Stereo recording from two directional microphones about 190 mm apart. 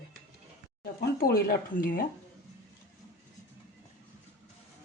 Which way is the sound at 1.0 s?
50° left (ahead or behind).